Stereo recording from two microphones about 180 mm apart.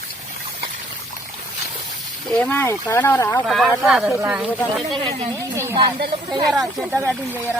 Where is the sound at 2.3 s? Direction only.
10° left (ahead or behind).